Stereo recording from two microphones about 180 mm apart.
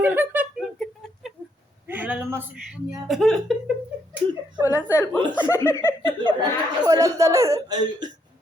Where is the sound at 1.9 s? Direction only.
10° right (ahead or behind).